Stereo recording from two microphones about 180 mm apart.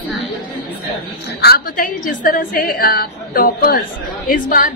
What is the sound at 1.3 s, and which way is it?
A woman's voice, 55° left (ahead or behind).